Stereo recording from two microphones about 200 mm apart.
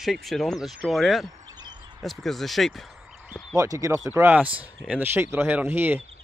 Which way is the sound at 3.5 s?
15° right (ahead or behind).